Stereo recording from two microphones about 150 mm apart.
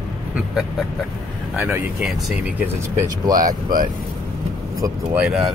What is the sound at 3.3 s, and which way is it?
Speech, 70° right (ahead or behind).